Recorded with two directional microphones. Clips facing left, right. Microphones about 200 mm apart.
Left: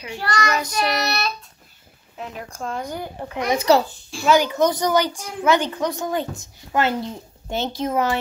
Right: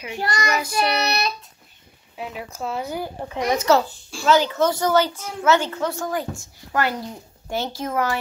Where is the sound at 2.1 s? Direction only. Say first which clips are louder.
Right 1 dB; 5° right (ahead or behind).